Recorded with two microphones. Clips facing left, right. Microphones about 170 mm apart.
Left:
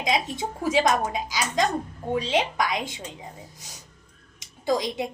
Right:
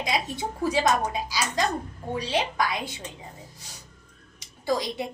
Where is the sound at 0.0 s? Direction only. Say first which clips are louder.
Left 2 dB; 20° left (ahead or behind).